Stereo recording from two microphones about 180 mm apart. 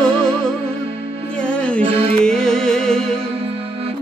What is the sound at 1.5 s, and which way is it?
Music, 5° left (ahead or behind).